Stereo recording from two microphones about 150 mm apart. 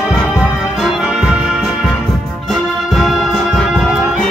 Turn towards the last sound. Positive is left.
turn(degrees=0)  # may be behind; listen again after turning